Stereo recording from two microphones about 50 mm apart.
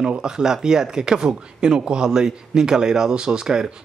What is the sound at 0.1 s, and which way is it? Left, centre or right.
Speech, centre.